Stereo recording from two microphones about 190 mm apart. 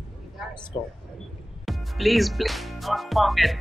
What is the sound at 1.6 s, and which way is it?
Speech, centre (ahead or behind).